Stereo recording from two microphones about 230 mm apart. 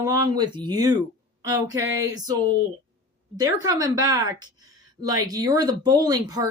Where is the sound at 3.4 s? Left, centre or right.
Centre.